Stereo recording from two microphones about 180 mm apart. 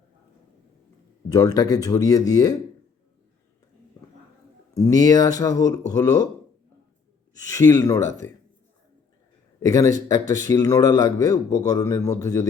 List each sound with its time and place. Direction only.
1.3 s a man's voice: 20° left (ahead or behind)
4.7 s a man's voice: 20° left (ahead or behind)
7.4 s a man's voice: 20° left (ahead or behind)
9.6 s a man's voice: 20° left (ahead or behind)